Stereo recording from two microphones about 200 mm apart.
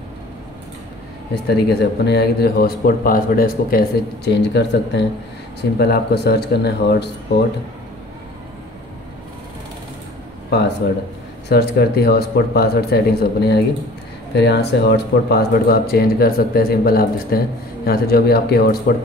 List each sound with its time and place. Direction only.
1.3 s speech: 55° left (ahead or behind)
10.8 s a man's voice: 55° left (ahead or behind)